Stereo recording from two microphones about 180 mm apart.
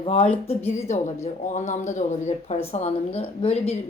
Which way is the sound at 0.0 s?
35° left (ahead or behind).